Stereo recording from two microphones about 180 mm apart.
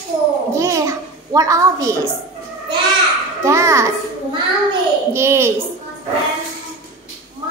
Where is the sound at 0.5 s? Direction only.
15° right (ahead or behind).